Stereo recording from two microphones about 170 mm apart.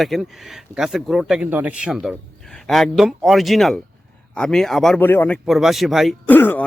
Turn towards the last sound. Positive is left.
turn(degrees=10)  # may be behind; listen again after turning